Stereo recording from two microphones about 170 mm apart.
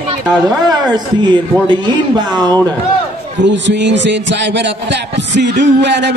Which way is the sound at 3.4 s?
90° right.